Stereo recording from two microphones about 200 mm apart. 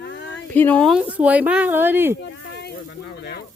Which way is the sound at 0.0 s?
60° left (ahead or behind).